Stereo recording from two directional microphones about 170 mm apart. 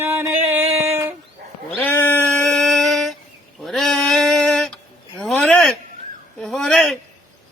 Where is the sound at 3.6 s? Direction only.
Centre (ahead or behind).